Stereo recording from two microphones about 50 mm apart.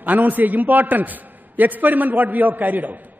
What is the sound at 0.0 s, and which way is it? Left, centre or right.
A man's voice, right.